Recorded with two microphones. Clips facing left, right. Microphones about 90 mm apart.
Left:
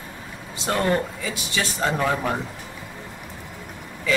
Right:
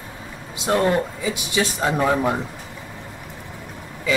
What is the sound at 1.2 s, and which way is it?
Speech, 15° right (ahead or behind).